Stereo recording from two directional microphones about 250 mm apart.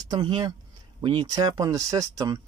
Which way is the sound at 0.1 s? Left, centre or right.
Centre.